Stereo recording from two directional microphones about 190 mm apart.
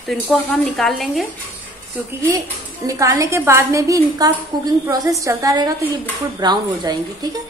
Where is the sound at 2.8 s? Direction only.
15° right (ahead or behind).